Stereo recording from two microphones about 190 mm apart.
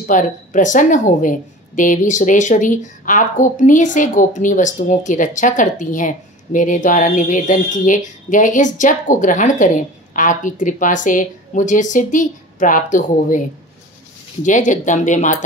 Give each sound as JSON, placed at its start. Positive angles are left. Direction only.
{"t": 0.0, "sound": "a woman's voice", "side_deg": 40}
{"t": 14.4, "sound": "speech", "side_deg": 40}